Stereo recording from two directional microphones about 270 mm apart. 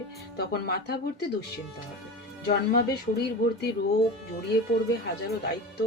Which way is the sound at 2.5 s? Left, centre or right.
Left.